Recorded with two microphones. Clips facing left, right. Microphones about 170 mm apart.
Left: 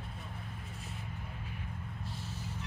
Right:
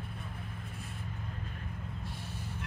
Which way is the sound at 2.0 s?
60° right (ahead or behind).